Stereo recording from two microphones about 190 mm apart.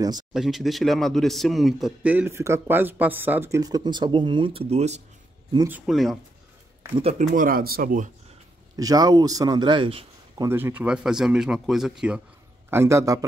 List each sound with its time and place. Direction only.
0.3 s a man's voice: centre (ahead or behind); by 5.0 s 35° right (ahead or behind)
5.7 s speech: 5° right (ahead or behind)
7.0 s speech: 30° right (ahead or behind)
7.3 s speech: 50° right (ahead or behind)
8.7 s a man's voice: 20° right (ahead or behind)
10.3 s speech: 15° right (ahead or behind)
12.6 s a man's voice: 15° right (ahead or behind)